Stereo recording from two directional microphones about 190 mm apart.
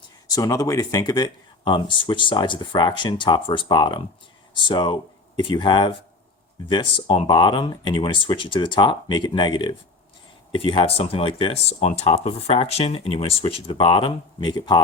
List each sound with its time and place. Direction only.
0.3 s speech: 20° left (ahead or behind)